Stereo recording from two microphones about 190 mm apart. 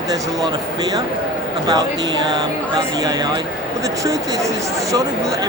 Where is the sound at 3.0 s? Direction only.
20° right (ahead or behind).